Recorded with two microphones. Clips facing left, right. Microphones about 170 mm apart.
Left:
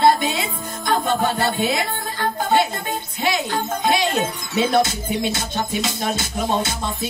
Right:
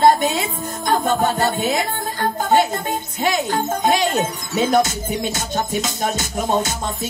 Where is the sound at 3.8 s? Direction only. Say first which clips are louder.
Right 1 dB; 45° right (ahead or behind).